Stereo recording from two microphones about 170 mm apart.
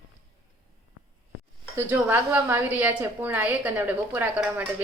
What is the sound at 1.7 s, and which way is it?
A woman's voice, 10° right (ahead or behind).